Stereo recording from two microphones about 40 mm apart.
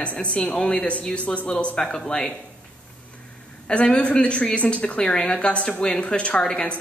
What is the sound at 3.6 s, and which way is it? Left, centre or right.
Speech, left.